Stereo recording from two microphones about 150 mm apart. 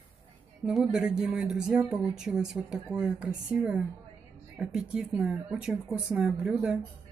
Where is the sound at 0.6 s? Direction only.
5° right (ahead or behind).